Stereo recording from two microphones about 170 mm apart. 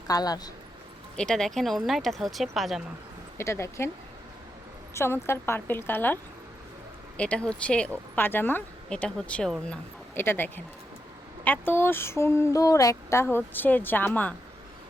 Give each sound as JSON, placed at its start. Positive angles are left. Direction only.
{"t": 0.1, "sound": "a woman's voice", "side_deg": 25}
{"t": 1.1, "sound": "speech", "side_deg": 5}
{"t": 3.3, "sound": "speech", "side_deg": 15}
{"t": 4.9, "sound": "speech", "side_deg": 15}
{"t": 7.2, "sound": "speech", "side_deg": 5}